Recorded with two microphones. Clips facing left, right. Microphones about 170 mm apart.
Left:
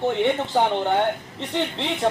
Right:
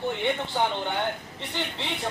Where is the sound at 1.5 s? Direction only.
65° left (ahead or behind).